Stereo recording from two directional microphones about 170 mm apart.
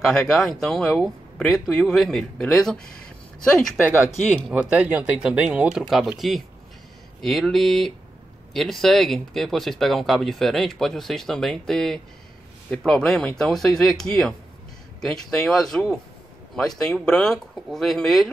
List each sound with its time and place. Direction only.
0.0 s speech: 5° left (ahead or behind)
3.8 s speech: 10° right (ahead or behind)